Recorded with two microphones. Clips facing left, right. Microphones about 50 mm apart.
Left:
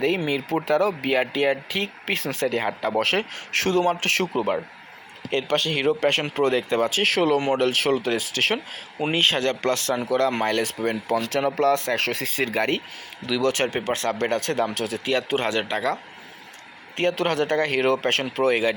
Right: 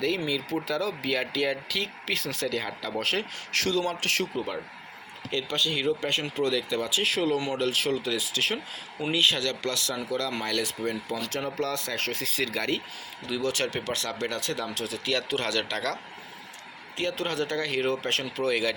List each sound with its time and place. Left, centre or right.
0.0 s speech: left
1.1 s speech: left
3.0 s speech: left
10.8 s speech: left
11.6 s speech: left
13.2 s speech: left
13.5 s speech: left
15.0 s speech: left
17.0 s speech: left